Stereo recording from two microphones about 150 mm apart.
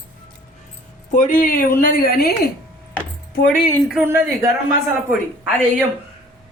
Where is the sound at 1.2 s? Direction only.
65° left (ahead or behind); by 2.4 s 90° left.